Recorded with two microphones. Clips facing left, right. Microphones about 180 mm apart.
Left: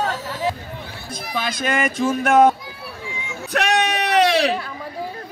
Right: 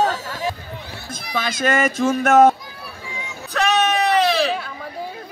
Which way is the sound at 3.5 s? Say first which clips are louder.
Right 1 dB; 70° left (ahead or behind).